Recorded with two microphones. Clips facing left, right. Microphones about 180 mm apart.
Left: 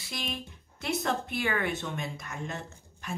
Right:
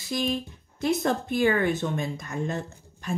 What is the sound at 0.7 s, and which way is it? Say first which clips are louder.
Speech: right 6 dB; 40° right (ahead or behind).